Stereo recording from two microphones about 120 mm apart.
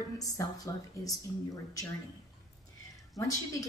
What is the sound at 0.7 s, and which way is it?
A woman's voice, 35° left (ahead or behind).